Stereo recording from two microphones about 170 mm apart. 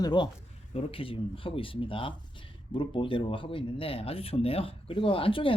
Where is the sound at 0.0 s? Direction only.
25° left (ahead or behind).